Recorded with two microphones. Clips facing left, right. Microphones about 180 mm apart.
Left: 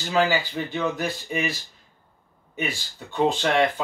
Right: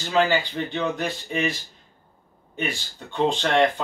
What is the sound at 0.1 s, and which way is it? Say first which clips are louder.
Speech: right 1 dB; 5° left (ahead or behind).